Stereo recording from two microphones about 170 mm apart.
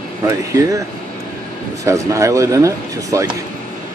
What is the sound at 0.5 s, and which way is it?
Speech, 20° right (ahead or behind).